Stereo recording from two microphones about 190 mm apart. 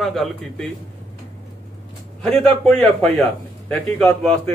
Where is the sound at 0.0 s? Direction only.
Centre (ahead or behind).